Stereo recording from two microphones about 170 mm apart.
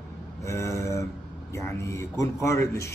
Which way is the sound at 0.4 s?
15° left (ahead or behind).